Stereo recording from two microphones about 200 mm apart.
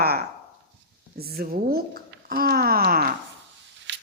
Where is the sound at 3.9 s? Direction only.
60° right (ahead or behind).